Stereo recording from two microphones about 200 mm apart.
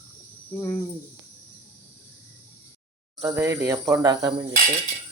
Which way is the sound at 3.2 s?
15° right (ahead or behind).